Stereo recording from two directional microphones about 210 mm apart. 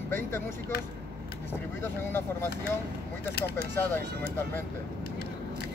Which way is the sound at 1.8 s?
10° left (ahead or behind).